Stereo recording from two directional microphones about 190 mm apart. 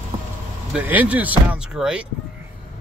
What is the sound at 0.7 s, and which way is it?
Speech, 10° right (ahead or behind).